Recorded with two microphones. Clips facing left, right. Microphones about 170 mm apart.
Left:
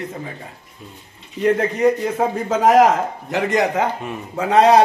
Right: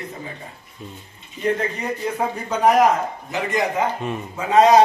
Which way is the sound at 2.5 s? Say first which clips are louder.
Left 2 dB; 90° left.